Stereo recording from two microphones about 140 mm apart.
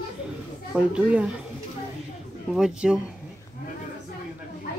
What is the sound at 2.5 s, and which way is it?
Speech, 5° right (ahead or behind).